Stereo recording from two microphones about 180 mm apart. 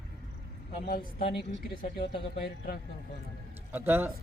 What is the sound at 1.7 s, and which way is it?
Speech, 55° left (ahead or behind).